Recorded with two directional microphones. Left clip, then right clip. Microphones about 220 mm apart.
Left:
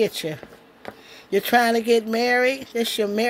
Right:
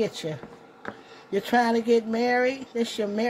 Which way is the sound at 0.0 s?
45° left (ahead or behind).